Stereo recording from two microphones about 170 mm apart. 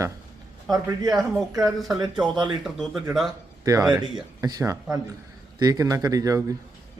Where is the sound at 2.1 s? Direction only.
5° right (ahead or behind).